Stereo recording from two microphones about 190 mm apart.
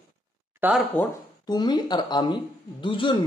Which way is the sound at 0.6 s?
10° right (ahead or behind).